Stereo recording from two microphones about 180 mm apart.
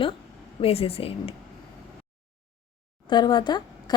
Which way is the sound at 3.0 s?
25° left (ahead or behind).